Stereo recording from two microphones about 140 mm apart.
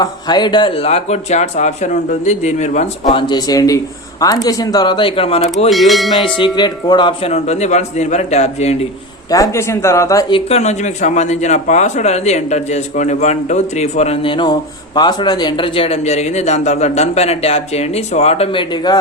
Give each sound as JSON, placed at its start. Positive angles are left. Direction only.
{"t": 0.0, "sound": "a man's voice", "side_deg": 30}
{"t": 3.2, "sound": "speech", "side_deg": 30}
{"t": 5.7, "sound": "speech", "side_deg": 0}
{"t": 6.2, "sound": "speech", "side_deg": 35}
{"t": 7.3, "sound": "a man's voice", "side_deg": 50}
{"t": 9.3, "sound": "speech", "side_deg": 20}
{"t": 10.3, "sound": "a man's voice", "side_deg": 50}